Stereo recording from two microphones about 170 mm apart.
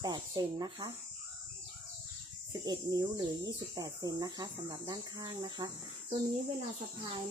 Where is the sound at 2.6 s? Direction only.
25° right (ahead or behind).